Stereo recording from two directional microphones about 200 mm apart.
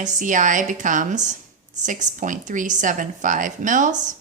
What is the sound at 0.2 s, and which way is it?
A woman's voice, 40° right (ahead or behind).